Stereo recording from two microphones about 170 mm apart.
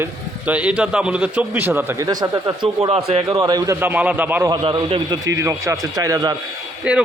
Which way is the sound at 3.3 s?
20° right (ahead or behind).